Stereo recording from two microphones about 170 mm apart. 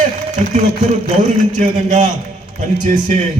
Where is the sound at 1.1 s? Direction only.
45° right (ahead or behind).